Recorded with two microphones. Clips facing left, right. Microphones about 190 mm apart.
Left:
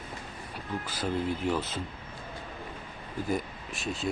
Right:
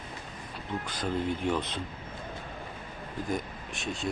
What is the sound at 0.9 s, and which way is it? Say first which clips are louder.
Speech: even; 5° left (ahead or behind).